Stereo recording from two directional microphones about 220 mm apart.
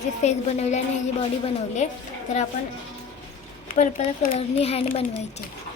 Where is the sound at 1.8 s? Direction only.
30° left (ahead or behind).